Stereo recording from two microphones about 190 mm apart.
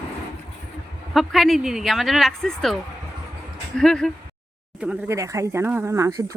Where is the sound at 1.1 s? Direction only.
Centre (ahead or behind).